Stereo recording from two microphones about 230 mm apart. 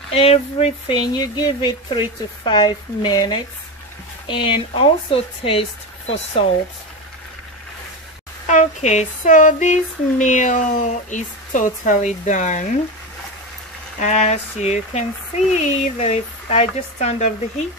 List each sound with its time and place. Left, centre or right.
0.1 s speech: left
8.5 s a sound: left
13.9 s speech: left